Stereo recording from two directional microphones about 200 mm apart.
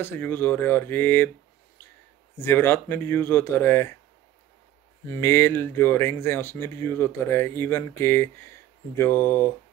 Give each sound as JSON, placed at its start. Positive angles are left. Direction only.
{"t": 0.0, "sound": "speech", "side_deg": 10}
{"t": 2.3, "sound": "speech", "side_deg": 10}
{"t": 5.0, "sound": "speech", "side_deg": 10}